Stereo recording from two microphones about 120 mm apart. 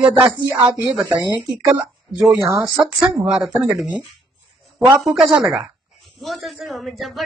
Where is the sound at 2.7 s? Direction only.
10° right (ahead or behind).